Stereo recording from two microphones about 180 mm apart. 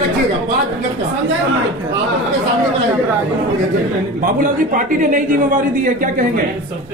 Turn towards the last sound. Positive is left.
turn(degrees=-50)  # may be behind; listen again after turning